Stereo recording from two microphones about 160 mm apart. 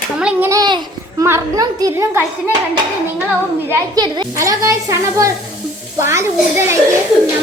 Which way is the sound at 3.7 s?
25° right (ahead or behind).